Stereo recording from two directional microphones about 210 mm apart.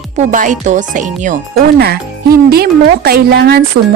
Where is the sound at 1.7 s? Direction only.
50° right (ahead or behind).